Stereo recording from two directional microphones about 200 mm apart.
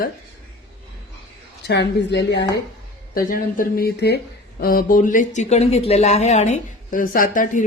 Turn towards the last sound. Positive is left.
turn(degrees=40)  # may be behind; listen again after turning